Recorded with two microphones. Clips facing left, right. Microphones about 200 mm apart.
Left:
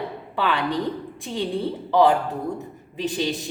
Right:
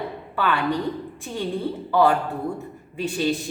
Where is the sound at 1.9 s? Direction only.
20° left (ahead or behind).